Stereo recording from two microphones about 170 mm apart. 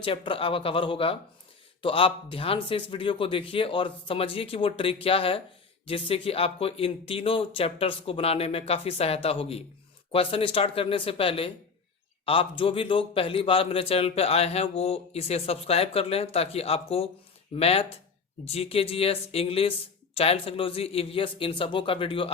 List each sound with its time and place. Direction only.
0.0 s a man's voice: 30° left (ahead or behind)